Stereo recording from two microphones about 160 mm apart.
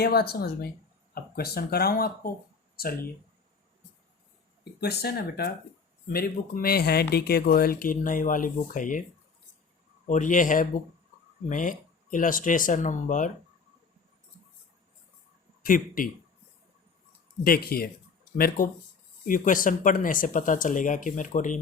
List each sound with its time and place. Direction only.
0.0 s speech: 80° left
4.8 s speech: 90° left
6.1 s speech: 70° left (ahead or behind)
10.1 s speech: 55° left (ahead or behind)
15.6 s speech: 60° left (ahead or behind)
17.4 s speech: 70° left (ahead or behind); by 21.6 s 50° left (ahead or behind)